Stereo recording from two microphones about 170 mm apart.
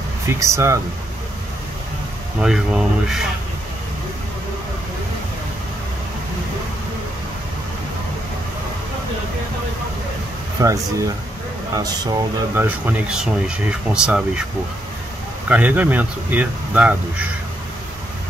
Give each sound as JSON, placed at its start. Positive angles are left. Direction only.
{"t": 0.3, "sound": "speech", "side_deg": -15}
{"t": 2.4, "sound": "speech", "side_deg": -5}
{"t": 10.6, "sound": "speech", "side_deg": -20}
{"t": 12.6, "sound": "speech", "side_deg": -10}
{"t": 15.4, "sound": "speech", "side_deg": -10}